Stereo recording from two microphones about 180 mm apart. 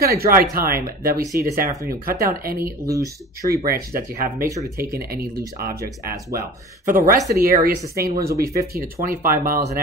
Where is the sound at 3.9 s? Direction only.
50° right (ahead or behind).